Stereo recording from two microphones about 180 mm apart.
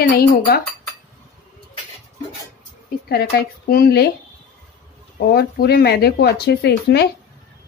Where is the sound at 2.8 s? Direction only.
60° left (ahead or behind).